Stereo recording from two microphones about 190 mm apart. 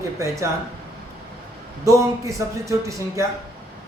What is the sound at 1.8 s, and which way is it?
Speech, 15° right (ahead or behind).